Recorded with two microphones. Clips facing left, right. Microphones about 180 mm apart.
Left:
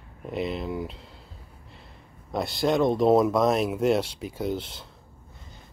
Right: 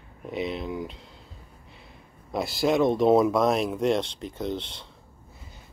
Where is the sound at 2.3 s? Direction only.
Centre (ahead or behind).